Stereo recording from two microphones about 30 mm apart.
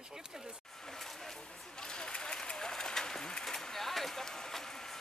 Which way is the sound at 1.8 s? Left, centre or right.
Left.